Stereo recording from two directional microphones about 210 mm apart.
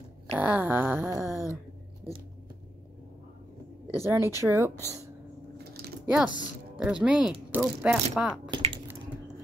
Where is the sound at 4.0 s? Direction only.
10° right (ahead or behind).